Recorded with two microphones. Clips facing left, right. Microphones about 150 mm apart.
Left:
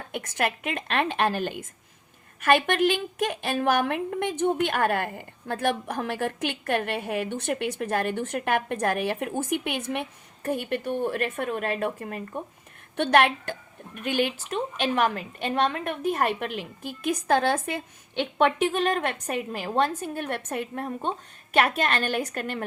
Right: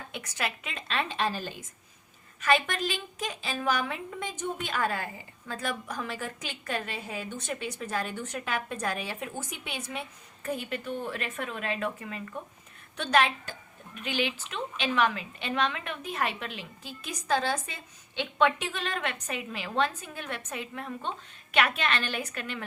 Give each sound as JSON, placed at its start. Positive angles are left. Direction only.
{"t": 0.1, "sound": "a woman's voice", "side_deg": 50}
{"t": 13.0, "sound": "a woman's voice", "side_deg": 60}